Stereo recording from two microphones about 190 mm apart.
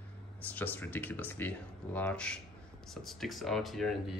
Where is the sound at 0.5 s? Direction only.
10° left (ahead or behind).